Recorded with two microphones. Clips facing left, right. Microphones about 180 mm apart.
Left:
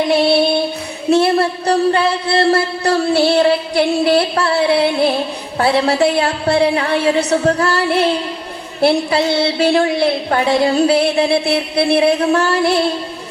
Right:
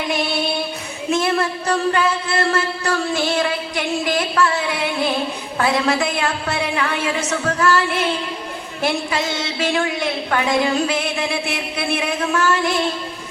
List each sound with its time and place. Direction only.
0.1 s female singing: 35° left (ahead or behind)
1.1 s a woman's voice: 35° left (ahead or behind)